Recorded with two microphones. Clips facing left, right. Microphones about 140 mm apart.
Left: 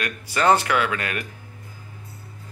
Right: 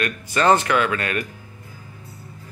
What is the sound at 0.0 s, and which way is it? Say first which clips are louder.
A man's voice: right 2 dB; 10° left (ahead or behind).